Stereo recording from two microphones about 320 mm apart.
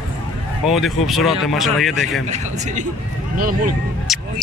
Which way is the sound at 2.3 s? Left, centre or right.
Right.